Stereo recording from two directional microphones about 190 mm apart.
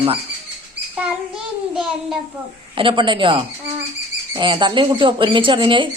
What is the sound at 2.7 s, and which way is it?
A woman's voice, 25° right (ahead or behind).